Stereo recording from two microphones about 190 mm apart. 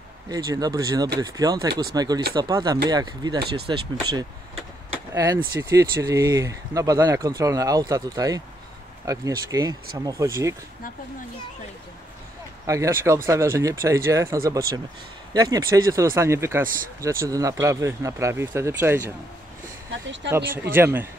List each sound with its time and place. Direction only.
0.3 s speech: 20° right (ahead or behind)
5.1 s speech: 15° right (ahead or behind)
12.6 s speech: 15° right (ahead or behind)
20.2 s speech: 10° right (ahead or behind)